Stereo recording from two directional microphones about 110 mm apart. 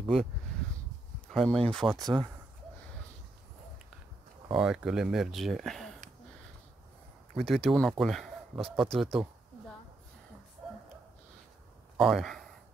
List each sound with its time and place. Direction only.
1.3 s speech: 5° left (ahead or behind)
2.0 s speech: 40° right (ahead or behind)
4.6 s speech: 5° right (ahead or behind)
7.3 s a man's voice: centre (ahead or behind)
10.6 s a sound: centre (ahead or behind)
12.0 s speech: centre (ahead or behind)